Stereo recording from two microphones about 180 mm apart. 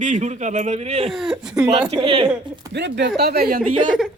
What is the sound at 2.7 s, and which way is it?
Speech, 75° right (ahead or behind).